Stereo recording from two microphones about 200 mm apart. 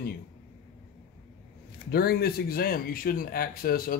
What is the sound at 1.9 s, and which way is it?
Speech, 50° left (ahead or behind).